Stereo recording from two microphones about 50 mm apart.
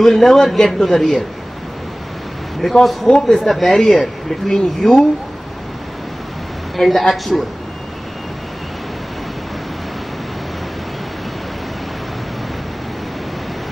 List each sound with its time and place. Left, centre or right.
0.0 s a man's voice: centre
2.6 s a man's voice: centre
6.8 s speech: centre